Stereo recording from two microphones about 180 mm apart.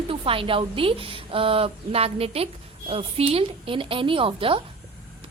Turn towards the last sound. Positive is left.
turn(degrees=-30)  # may be behind; listen again after turning